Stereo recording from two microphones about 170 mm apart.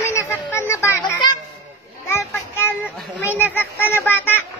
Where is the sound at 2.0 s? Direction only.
15° left (ahead or behind).